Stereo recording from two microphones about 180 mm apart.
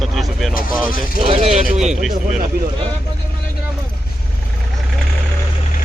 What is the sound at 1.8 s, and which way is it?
Speech, centre (ahead or behind).